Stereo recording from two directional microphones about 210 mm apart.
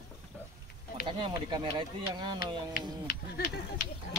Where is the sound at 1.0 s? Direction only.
25° right (ahead or behind).